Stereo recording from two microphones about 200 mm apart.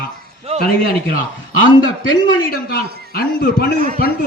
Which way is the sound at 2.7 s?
50° left (ahead or behind).